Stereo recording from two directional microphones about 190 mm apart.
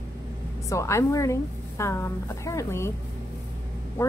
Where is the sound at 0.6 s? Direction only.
15° left (ahead or behind).